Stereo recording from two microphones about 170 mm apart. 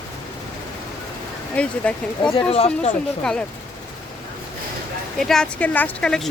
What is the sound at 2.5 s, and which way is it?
Speech, 35° left (ahead or behind).